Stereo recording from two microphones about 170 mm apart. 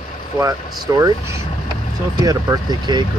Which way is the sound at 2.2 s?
20° right (ahead or behind).